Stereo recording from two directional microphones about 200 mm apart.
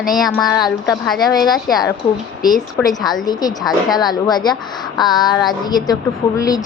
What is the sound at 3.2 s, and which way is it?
Speech, 20° left (ahead or behind).